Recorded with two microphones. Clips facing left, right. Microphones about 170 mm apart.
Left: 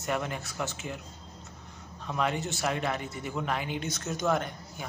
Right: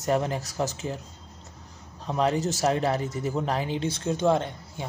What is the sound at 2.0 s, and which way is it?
A man's voice, 35° right (ahead or behind).